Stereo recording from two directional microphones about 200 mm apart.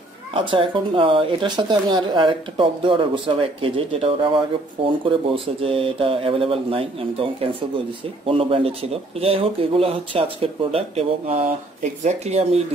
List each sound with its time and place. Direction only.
0.3 s speech: 25° right (ahead or behind)
8.3 s speech: 25° right (ahead or behind)